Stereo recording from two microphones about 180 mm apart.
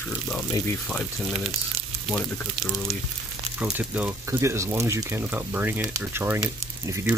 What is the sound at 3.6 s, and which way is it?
Speech, 10° right (ahead or behind).